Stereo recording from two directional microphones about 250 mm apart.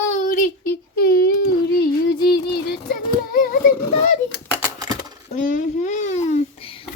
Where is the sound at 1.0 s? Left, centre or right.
Left.